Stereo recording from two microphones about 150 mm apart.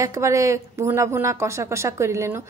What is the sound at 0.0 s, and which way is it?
A woman's voice, 20° right (ahead or behind).